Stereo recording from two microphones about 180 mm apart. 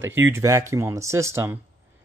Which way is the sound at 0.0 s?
15° right (ahead or behind).